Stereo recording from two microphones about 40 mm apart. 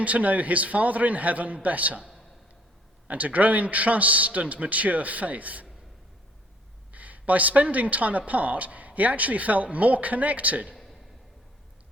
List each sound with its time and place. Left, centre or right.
0.0 s a woman's voice: right
3.1 s a woman's voice: right
6.9 s a woman's voice: right